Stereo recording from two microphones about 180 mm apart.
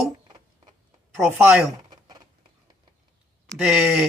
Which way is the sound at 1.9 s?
20° right (ahead or behind).